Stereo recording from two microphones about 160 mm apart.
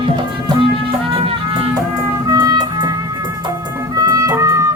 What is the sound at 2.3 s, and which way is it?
Music, 25° right (ahead or behind).